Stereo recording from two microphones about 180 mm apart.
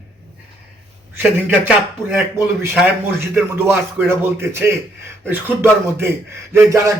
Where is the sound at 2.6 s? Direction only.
15° right (ahead or behind).